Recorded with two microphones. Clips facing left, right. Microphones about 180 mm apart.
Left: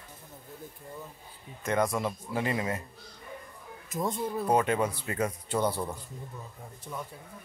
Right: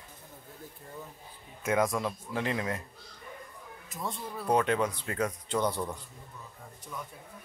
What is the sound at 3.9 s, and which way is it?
Speech, 45° left (ahead or behind).